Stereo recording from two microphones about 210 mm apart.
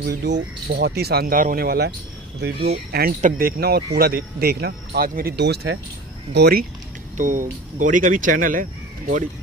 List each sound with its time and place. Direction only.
0.0 s speech: 50° right (ahead or behind)
7.2 s speech: 40° right (ahead or behind)